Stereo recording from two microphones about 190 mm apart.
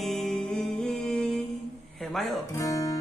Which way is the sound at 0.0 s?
Centre (ahead or behind).